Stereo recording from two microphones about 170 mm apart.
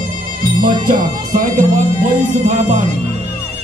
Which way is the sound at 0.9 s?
55° right (ahead or behind).